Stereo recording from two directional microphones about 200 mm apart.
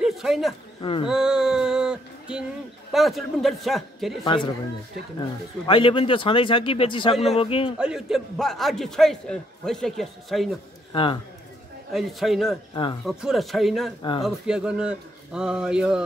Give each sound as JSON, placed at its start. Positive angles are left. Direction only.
{"t": 0.0, "sound": "a man's voice", "side_deg": 0}
{"t": 0.7, "sound": "speech", "side_deg": 25}
{"t": 1.0, "sound": "a sound", "side_deg": -5}
{"t": 2.9, "sound": "a man's voice", "side_deg": 0}
{"t": 4.2, "sound": "a man's voice", "side_deg": 25}
{"t": 5.7, "sound": "a man's voice", "side_deg": 25}
{"t": 7.8, "sound": "a man's voice", "side_deg": -5}
{"t": 10.9, "sound": "a man's voice", "side_deg": 25}
{"t": 11.9, "sound": "a man's voice", "side_deg": 0}